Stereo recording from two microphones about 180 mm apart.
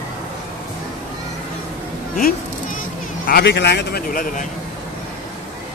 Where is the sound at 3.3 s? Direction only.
65° left (ahead or behind); by 4.5 s 50° left (ahead or behind).